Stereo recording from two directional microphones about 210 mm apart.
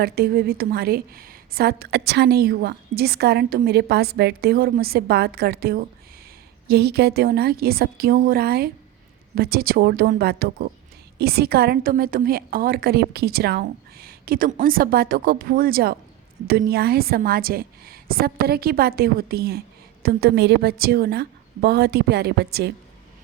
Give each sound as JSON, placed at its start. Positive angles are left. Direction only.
{"t": 0.0, "sound": "a woman's voice", "side_deg": -45}